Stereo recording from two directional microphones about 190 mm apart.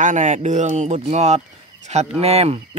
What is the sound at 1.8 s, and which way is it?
Speech, 35° right (ahead or behind).